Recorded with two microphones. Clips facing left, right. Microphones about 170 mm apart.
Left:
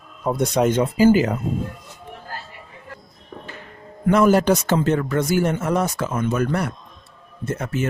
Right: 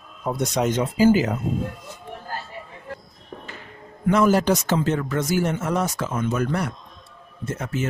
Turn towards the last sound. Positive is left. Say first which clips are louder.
# left 3 dB
turn(degrees=60)  # may be behind; listen again after turning